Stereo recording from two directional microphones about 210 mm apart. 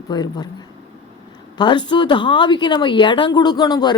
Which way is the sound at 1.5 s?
20° left (ahead or behind).